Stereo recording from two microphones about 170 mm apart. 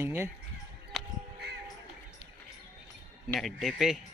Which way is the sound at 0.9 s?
Centre (ahead or behind).